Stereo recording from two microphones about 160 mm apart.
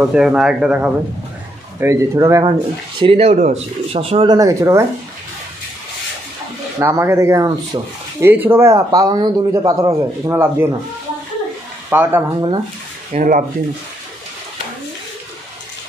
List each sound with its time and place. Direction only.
0.0 s speech: 5° right (ahead or behind)
1.8 s speech: 20° right (ahead or behind)
3.0 s speech: 40° right (ahead or behind)
4.4 s speech: 20° right (ahead or behind)
6.8 s speech: 15° right (ahead or behind)
11.9 s speech: 10° right (ahead or behind)
13.1 s speech: 55° right (ahead or behind)